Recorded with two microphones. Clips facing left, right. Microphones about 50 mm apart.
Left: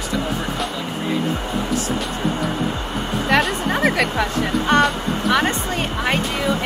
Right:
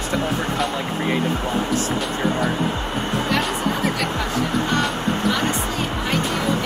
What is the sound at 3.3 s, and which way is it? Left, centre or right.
Speech, left.